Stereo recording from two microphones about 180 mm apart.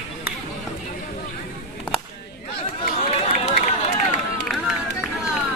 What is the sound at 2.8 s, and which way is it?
Run, 35° left (ahead or behind).